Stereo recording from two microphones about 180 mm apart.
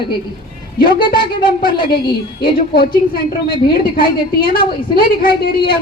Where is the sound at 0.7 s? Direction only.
55° left (ahead or behind).